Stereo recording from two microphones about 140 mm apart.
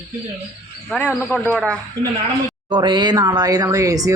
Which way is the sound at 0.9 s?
10° left (ahead or behind).